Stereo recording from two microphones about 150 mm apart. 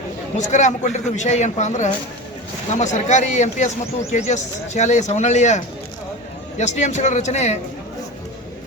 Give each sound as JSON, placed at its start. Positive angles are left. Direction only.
{"t": 0.3, "sound": "a man's voice", "side_deg": 50}